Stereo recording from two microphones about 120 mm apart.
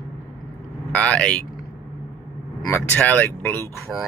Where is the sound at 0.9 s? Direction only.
10° left (ahead or behind).